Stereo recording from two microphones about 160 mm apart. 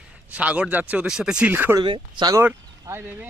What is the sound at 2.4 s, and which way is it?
Speech, 15° right (ahead or behind).